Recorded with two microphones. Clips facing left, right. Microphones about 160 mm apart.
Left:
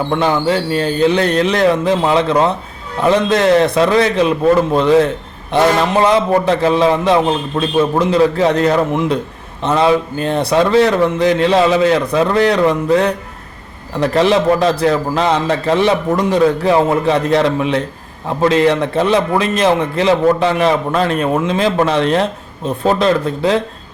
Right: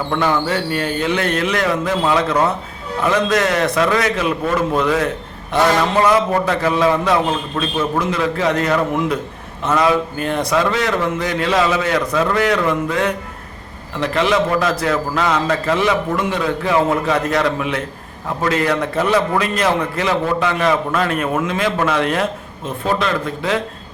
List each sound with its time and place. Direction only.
0.1 s a man's voice: 25° left (ahead or behind)